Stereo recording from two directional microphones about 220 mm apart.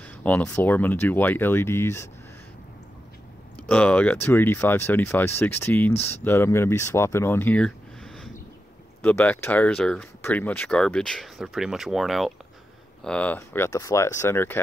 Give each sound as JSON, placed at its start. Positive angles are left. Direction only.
{"t": 0.2, "sound": "speech", "side_deg": 5}
{"t": 3.5, "sound": "speech", "side_deg": 5}